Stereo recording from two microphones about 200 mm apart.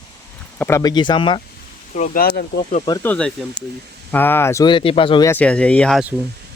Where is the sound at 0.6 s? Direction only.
15° left (ahead or behind).